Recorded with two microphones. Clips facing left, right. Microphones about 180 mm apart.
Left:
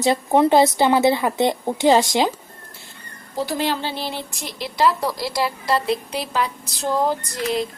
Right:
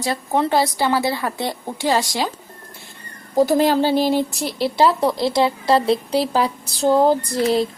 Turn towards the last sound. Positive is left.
turn(degrees=-35)  # may be behind; listen again after turning